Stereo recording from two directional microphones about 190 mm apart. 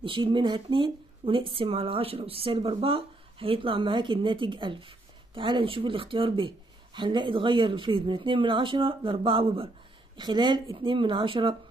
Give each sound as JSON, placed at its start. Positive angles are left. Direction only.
{"t": 0.0, "sound": "speech", "side_deg": -25}